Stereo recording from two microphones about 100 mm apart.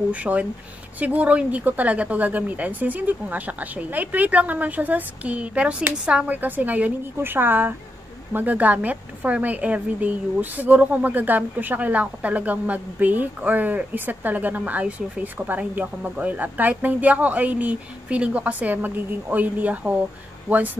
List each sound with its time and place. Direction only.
0.1 s a woman's voice: 15° right (ahead or behind)